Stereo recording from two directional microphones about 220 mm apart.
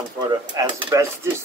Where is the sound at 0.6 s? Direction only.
10° right (ahead or behind).